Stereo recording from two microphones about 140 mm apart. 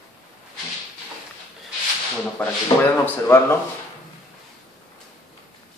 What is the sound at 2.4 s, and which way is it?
Speech, 10° left (ahead or behind).